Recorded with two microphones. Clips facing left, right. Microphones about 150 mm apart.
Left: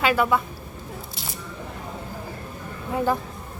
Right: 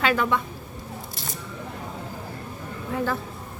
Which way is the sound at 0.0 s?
10° left (ahead or behind).